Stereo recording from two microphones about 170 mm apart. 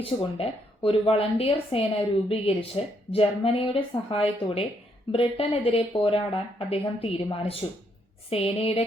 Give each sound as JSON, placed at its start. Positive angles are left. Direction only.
{"t": 0.0, "sound": "speech", "side_deg": 35}